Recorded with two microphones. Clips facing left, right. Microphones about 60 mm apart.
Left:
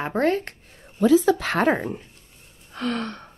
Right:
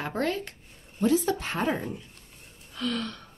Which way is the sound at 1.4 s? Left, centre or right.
Left.